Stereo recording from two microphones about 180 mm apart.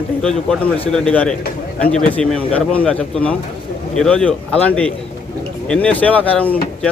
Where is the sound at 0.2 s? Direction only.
5° left (ahead or behind).